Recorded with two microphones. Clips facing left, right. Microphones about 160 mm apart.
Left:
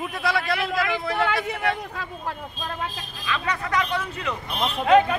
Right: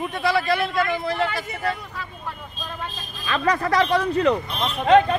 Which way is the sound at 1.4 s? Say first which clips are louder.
Left 2 dB; 65° left (ahead or behind).